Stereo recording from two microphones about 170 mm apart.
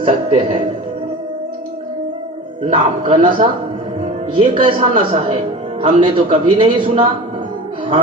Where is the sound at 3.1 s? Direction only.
30° right (ahead or behind).